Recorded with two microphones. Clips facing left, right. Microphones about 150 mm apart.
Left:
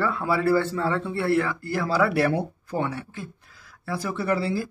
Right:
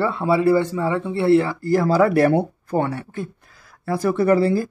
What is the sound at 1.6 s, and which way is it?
Speech, 45° right (ahead or behind).